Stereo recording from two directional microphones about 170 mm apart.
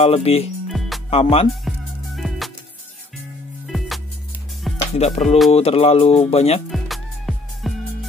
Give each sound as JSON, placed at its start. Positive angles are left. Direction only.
{"t": 0.0, "sound": "speech", "side_deg": 35}
{"t": 0.7, "sound": "music", "side_deg": 0}
{"t": 1.1, "sound": "speech", "side_deg": 35}
{"t": 2.1, "sound": "music", "side_deg": 0}
{"t": 4.9, "sound": "speech", "side_deg": 40}
{"t": 6.7, "sound": "music", "side_deg": 0}